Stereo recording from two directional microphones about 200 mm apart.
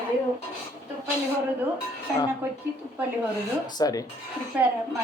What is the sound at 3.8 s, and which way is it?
Speech, 20° left (ahead or behind).